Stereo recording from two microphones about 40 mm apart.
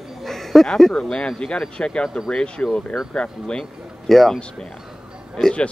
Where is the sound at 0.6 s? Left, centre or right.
Centre.